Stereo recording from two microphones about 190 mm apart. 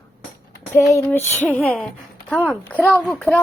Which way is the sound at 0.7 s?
10° left (ahead or behind).